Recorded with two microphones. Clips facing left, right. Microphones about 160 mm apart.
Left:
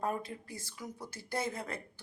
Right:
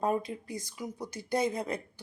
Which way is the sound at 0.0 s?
15° right (ahead or behind).